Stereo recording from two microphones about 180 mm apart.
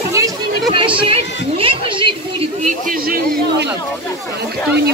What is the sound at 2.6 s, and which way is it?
A man's voice, 50° right (ahead or behind).